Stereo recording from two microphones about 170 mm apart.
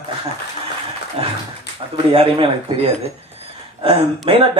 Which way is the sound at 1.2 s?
35° right (ahead or behind).